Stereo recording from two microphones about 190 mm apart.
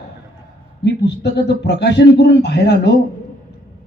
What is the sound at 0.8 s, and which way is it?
Speech, 65° left (ahead or behind).